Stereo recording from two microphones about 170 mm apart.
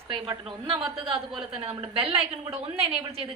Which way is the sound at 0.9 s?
35° right (ahead or behind).